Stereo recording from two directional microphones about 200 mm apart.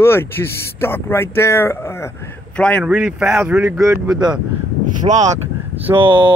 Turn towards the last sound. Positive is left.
turn(degrees=-25)  # may be behind; listen again after turning